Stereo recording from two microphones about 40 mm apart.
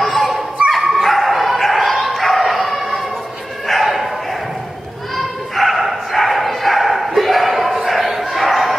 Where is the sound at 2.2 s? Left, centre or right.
Centre.